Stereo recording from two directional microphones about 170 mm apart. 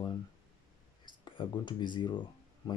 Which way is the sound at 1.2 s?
30° left (ahead or behind).